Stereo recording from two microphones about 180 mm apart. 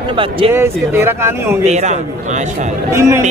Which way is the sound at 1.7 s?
40° right (ahead or behind).